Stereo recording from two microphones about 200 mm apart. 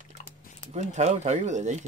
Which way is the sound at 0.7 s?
35° right (ahead or behind).